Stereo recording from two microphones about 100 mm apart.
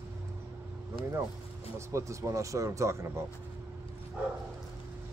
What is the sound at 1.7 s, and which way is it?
Speech, 30° right (ahead or behind).